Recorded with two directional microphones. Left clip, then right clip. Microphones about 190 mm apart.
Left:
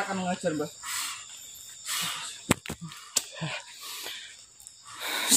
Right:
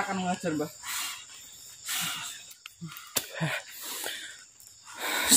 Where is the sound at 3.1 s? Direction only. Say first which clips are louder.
Right 1 dB; 40° right (ahead or behind).